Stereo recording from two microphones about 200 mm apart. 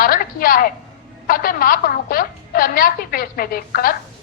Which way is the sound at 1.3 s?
45° left (ahead or behind).